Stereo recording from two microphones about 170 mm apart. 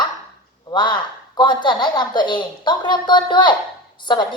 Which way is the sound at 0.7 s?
25° left (ahead or behind).